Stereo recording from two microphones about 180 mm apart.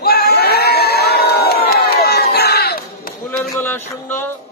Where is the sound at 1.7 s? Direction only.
60° left (ahead or behind).